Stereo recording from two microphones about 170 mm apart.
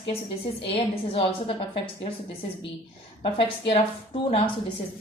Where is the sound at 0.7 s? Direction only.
35° left (ahead or behind).